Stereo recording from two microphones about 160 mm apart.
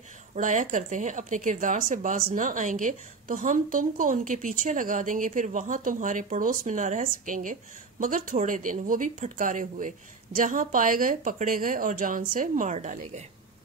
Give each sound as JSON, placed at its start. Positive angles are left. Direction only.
{"t": 0.3, "sound": "speech", "side_deg": -55}